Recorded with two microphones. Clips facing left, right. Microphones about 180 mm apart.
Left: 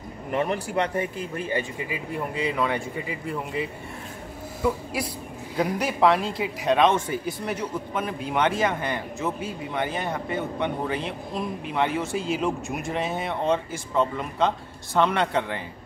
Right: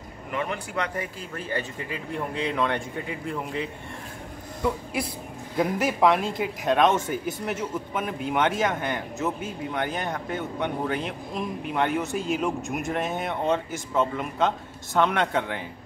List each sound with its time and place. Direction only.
0.3 s speech: 35° left (ahead or behind)
1.3 s a man's voice: 15° left (ahead or behind)
4.6 s a sound: 5° left (ahead or behind)
5.6 s a man's voice: centre (ahead or behind)